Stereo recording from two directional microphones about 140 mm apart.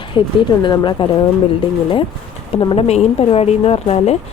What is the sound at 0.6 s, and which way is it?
Speech, 30° left (ahead or behind).